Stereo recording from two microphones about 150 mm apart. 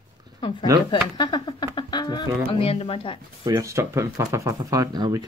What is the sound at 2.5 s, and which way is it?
Speech, 40° left (ahead or behind).